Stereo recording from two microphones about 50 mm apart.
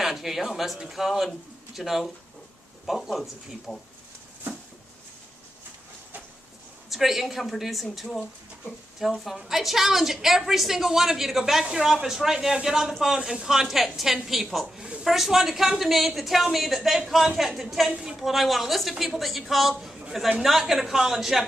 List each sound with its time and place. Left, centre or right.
0.0 s a man's voice: centre
6.9 s a woman's voice: centre